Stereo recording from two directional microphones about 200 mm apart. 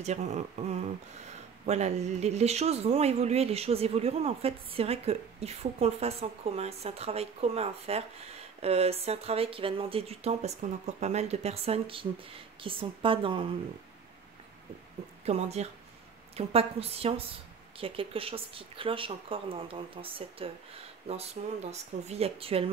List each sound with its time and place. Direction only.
0.0 s speech: 35° right (ahead or behind)
15.2 s speech: 30° right (ahead or behind)